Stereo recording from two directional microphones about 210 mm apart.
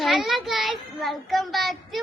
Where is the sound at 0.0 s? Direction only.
Centre (ahead or behind).